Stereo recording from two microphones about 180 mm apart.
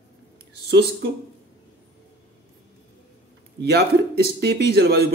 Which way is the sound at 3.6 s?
65° right (ahead or behind).